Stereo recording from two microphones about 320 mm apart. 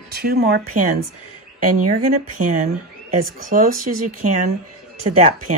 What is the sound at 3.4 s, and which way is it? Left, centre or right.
Speech, right.